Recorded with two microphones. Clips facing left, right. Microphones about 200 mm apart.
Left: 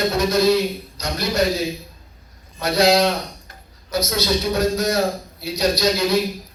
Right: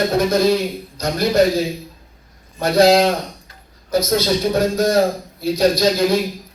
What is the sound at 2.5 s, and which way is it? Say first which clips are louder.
A man's voice: right 4 dB; 50° right (ahead or behind).